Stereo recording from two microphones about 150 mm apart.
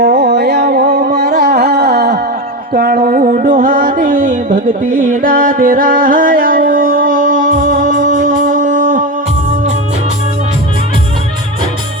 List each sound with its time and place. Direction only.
0.1 s carnatic music: 90° right
2.7 s music: 80° right; by 9.0 s 60° right (ahead or behind)